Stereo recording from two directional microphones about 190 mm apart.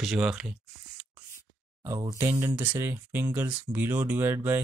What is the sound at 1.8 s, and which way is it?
Speech, 20° right (ahead or behind).